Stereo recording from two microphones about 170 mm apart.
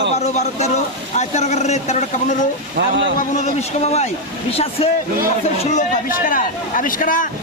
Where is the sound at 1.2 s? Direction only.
40° left (ahead or behind).